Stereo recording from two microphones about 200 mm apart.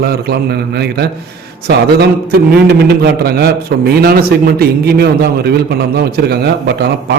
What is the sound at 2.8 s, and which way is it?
A man's voice, 50° right (ahead or behind).